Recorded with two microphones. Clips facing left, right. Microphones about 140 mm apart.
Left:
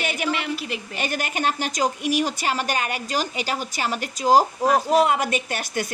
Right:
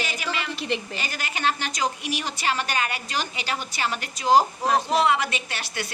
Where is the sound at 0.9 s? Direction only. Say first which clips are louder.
Left 6 dB; 55° left (ahead or behind).